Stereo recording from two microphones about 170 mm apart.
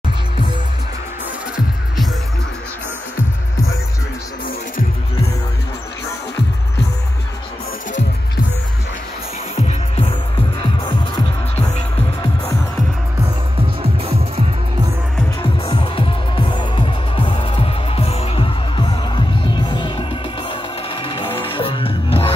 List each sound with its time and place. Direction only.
9.6 s music: 35° left (ahead or behind)
11.5 s music: 35° left (ahead or behind)
15.6 s music: 30° left (ahead or behind)